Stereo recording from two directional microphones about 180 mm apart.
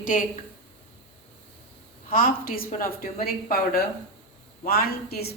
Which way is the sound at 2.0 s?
50° left (ahead or behind).